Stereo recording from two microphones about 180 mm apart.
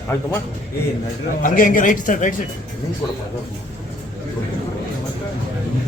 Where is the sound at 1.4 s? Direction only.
50° left (ahead or behind).